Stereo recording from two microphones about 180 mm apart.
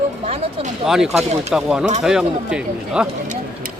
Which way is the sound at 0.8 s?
Centre (ahead or behind).